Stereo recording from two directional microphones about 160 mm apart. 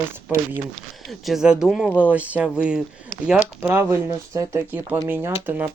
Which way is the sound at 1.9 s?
10° left (ahead or behind).